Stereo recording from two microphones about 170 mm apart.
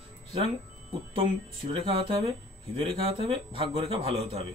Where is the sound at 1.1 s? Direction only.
30° right (ahead or behind).